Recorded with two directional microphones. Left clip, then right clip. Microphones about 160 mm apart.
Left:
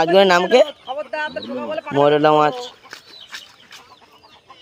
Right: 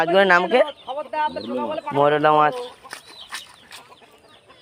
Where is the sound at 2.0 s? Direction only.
45° left (ahead or behind).